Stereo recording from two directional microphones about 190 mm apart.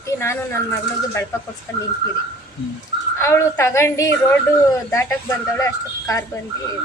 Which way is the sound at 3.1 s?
15° left (ahead or behind).